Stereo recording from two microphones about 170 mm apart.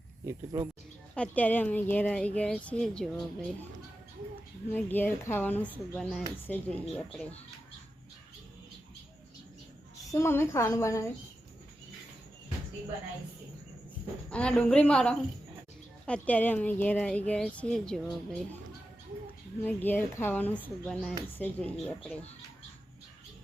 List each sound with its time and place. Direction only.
0.3 s speech: 20° right (ahead or behind)
1.1 s speech: 10° left (ahead or behind)
4.7 s speech: 10° left (ahead or behind)
10.1 s speech: 15° left (ahead or behind)
14.3 s speech: 5° left (ahead or behind)
19.6 s speech: 10° left (ahead or behind)